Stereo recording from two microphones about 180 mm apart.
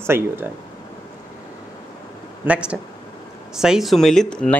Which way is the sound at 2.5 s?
5° right (ahead or behind).